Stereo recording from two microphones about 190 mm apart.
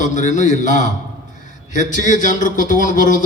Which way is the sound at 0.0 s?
40° left (ahead or behind).